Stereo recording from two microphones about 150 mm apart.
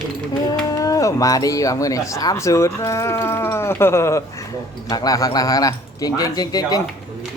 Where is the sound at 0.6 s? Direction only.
20° left (ahead or behind).